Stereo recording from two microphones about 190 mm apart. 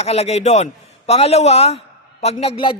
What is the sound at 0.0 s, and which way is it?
A man's voice, 35° left (ahead or behind).